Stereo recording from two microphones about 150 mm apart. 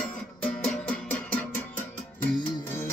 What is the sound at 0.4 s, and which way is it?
Music, 10° left (ahead or behind).